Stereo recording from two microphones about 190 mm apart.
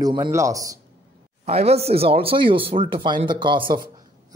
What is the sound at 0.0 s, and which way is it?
Speech, 20° right (ahead or behind).